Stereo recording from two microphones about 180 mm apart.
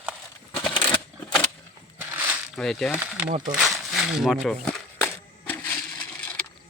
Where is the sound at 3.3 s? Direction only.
45° right (ahead or behind).